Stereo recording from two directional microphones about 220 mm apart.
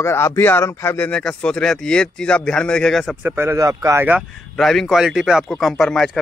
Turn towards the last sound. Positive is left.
turn(degrees=0)  # may be behind; listen again after turning